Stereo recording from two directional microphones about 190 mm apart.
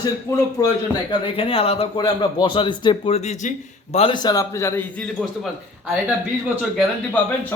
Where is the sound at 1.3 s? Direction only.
30° left (ahead or behind); by 5.1 s 10° left (ahead or behind).